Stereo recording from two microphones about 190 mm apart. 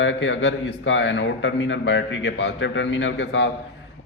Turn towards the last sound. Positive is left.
turn(degrees=70)  # may be behind; listen again after turning